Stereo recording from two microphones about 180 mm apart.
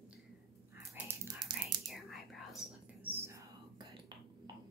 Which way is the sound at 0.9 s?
20° right (ahead or behind).